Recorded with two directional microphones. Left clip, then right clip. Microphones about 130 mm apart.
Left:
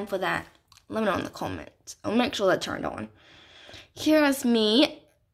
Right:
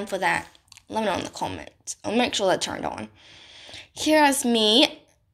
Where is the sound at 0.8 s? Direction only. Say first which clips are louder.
Right 1 dB; 50° left (ahead or behind).